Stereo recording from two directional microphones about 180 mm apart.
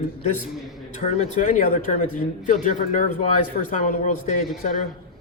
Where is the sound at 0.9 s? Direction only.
45° left (ahead or behind).